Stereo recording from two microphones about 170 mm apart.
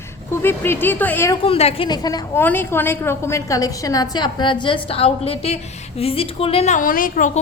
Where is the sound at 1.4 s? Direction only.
35° left (ahead or behind).